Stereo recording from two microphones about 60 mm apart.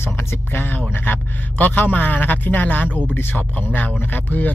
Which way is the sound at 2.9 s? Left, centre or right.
Right.